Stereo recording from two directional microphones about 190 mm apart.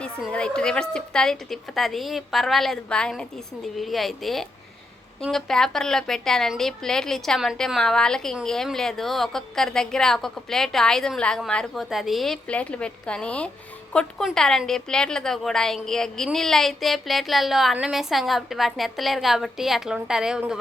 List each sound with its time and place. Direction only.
0.0 s a woman's voice: 5° left (ahead or behind)